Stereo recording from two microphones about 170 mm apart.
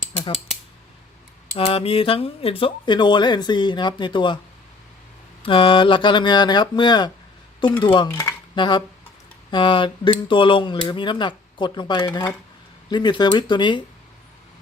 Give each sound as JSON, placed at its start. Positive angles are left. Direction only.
{"t": 1.5, "sound": "speech", "side_deg": 35}
{"t": 5.4, "sound": "speech", "side_deg": 30}